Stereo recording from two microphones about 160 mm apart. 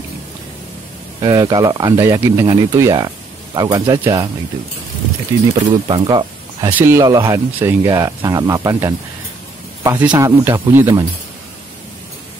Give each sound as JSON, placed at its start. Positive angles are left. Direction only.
{"t": 1.2, "sound": "speech", "side_deg": -20}
{"t": 5.7, "sound": "speech", "side_deg": -30}